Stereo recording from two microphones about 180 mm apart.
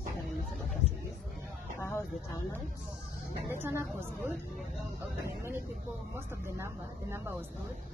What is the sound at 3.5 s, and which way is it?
Speech, 10° right (ahead or behind).